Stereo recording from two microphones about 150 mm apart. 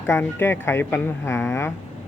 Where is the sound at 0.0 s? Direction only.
15° left (ahead or behind).